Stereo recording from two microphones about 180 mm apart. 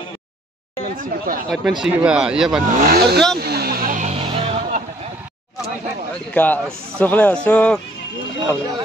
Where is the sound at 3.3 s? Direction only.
60° right (ahead or behind); by 4.6 s 30° right (ahead or behind).